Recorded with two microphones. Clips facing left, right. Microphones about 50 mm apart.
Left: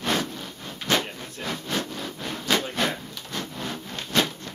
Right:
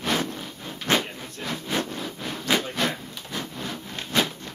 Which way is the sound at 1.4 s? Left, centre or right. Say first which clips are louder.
Right 1 dB; centre.